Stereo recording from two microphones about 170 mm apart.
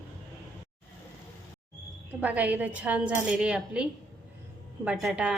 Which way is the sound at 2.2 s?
10° right (ahead or behind).